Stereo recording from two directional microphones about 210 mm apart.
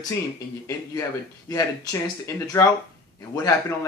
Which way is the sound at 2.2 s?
15° left (ahead or behind).